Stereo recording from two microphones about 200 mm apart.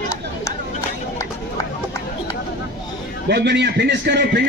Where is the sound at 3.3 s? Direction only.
55° right (ahead or behind).